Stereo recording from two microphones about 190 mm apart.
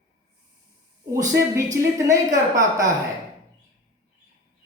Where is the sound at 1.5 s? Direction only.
15° right (ahead or behind).